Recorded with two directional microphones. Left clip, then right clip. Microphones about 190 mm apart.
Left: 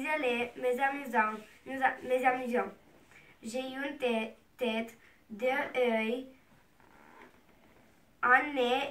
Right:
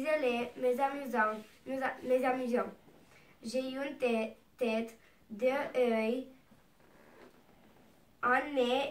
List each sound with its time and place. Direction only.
0.0 s a woman's voice: 10° left (ahead or behind)
8.2 s a woman's voice: 5° left (ahead or behind)